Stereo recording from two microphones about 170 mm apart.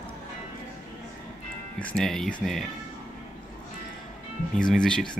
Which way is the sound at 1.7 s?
5° left (ahead or behind).